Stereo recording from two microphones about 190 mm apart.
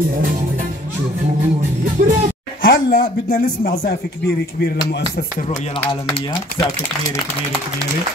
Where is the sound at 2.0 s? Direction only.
40° right (ahead or behind).